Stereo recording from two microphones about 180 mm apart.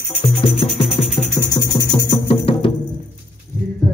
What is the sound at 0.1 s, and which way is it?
Music, 30° left (ahead or behind).